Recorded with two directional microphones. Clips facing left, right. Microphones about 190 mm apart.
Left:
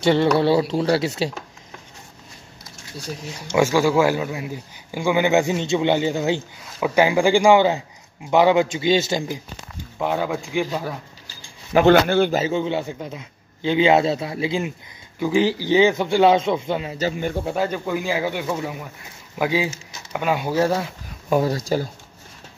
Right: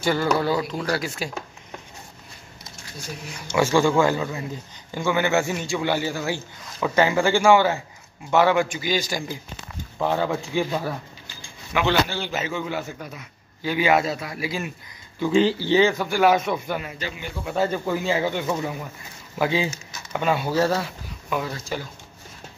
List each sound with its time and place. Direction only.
0.0 s a man's voice: 25° left (ahead or behind)
3.5 s a man's voice: 10° left (ahead or behind); by 9.4 s 25° left (ahead or behind)
9.9 s a man's voice: 10° left (ahead or behind)
11.2 s a sound: 45° left (ahead or behind)
12.4 s a man's voice: 30° left (ahead or behind)
15.1 s a man's voice: 15° left (ahead or behind)
17.0 s speech: 45° left (ahead or behind)
17.6 s a man's voice: 5° left (ahead or behind)
21.3 s speech: 35° left (ahead or behind)